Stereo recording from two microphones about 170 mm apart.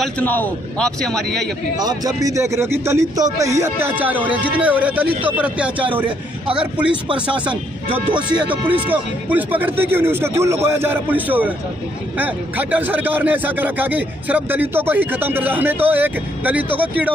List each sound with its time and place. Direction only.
0.0 s a man's voice: 10° left (ahead or behind)
1.8 s a man's voice: 20° right (ahead or behind); by 7.0 s 5° right (ahead or behind)
7.1 s speech: 30° right (ahead or behind)
8.4 s a man's voice: 10° right (ahead or behind)